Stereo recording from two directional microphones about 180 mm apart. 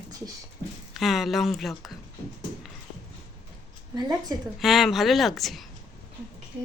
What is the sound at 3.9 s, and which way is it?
Speech, 20° right (ahead or behind).